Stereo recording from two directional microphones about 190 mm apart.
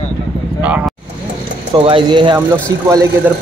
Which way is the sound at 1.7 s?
25° right (ahead or behind).